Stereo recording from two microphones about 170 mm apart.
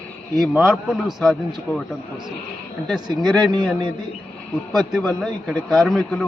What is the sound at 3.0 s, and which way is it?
Speech, 25° right (ahead or behind).